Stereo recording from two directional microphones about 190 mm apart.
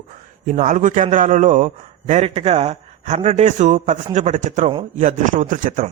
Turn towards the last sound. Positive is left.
turn(degrees=-45)  # may be behind; listen again after turning